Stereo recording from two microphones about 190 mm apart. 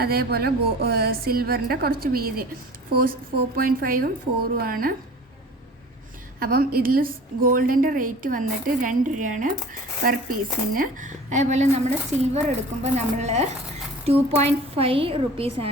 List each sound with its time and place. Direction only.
0.0 s a woman's voice: 55° right (ahead or behind)
6.4 s a woman's voice: 55° right (ahead or behind); by 15.7 s 30° right (ahead or behind)